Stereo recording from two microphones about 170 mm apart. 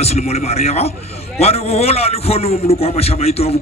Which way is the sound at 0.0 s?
40° left (ahead or behind).